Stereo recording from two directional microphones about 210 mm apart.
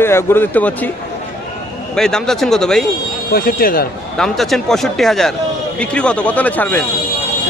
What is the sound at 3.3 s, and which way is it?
Speech, 40° left (ahead or behind).